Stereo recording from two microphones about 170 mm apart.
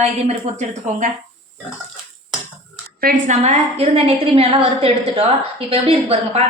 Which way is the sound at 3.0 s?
50° right (ahead or behind).